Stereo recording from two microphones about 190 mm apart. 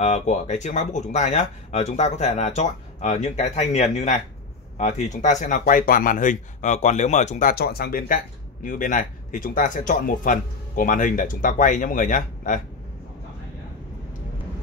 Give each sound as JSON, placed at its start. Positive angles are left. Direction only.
{"t": 0.0, "sound": "speech", "side_deg": 35}